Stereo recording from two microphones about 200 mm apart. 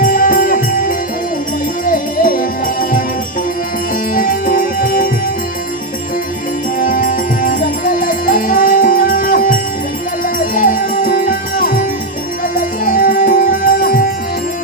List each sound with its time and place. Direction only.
0.0 s music: 45° left (ahead or behind)
4.1 s music: 45° left (ahead or behind)
6.7 s music: 45° left (ahead or behind)